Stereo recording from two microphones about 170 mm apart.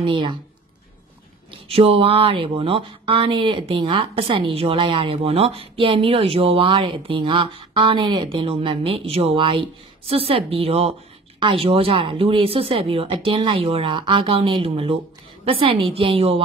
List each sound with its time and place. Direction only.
0.0 s speech: 30° right (ahead or behind)
1.5 s a woman's voice: 35° right (ahead or behind)